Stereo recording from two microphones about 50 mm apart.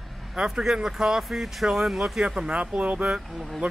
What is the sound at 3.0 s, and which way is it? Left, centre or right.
Speech, centre.